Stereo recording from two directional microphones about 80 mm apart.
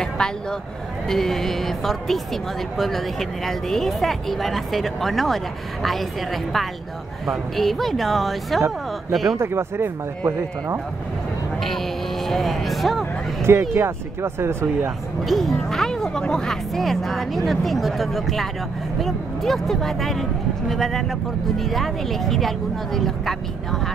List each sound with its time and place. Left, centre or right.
0.0 s speech: centre
9.4 s speech: right
12.3 s speech: centre
13.4 s speech: right
15.2 s speech: centre